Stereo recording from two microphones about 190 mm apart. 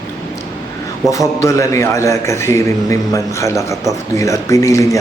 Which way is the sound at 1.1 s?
15° left (ahead or behind).